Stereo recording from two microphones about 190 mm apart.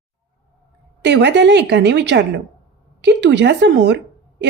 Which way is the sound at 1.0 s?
65° right (ahead or behind).